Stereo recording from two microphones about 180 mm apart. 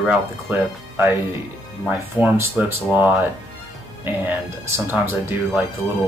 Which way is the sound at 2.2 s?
10° right (ahead or behind).